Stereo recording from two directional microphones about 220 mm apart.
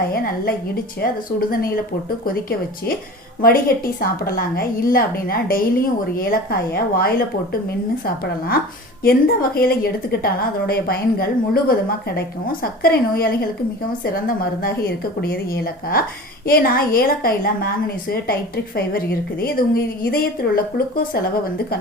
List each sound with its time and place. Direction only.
0.0 s a woman's voice: 40° left (ahead or behind)